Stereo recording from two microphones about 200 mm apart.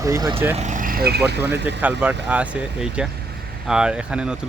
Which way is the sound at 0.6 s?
40° right (ahead or behind).